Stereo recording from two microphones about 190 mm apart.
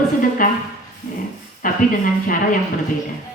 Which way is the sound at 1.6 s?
45° left (ahead or behind).